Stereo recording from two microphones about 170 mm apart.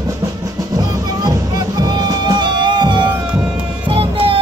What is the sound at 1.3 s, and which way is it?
Music, 20° right (ahead or behind).